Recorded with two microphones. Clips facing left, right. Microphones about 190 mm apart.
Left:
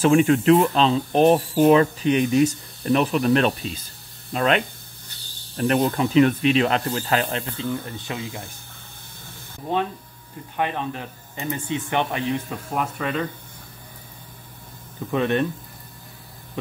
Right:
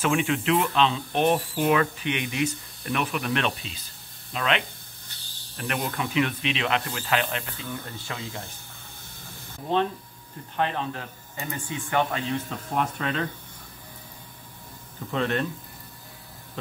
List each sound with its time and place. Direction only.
0.0 s speech: 40° left (ahead or behind)
7.8 s speech: 20° left (ahead or behind)
10.5 s speech: 15° left (ahead or behind)
12.7 s speech: 5° left (ahead or behind)
15.0 s speech: 15° left (ahead or behind)